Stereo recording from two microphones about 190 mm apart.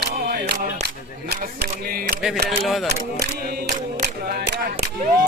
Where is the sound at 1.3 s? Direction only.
50° right (ahead or behind).